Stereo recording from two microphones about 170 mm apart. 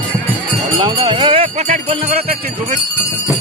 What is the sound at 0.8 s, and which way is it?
Jingle bell, 25° right (ahead or behind).